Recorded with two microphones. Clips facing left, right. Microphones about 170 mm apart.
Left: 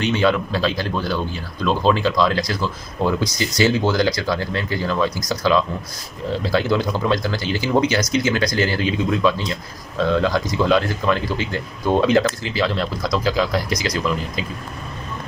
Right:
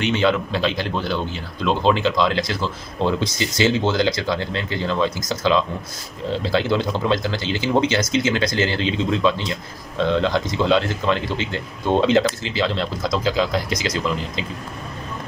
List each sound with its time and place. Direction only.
0.0 s speech: 20° right (ahead or behind)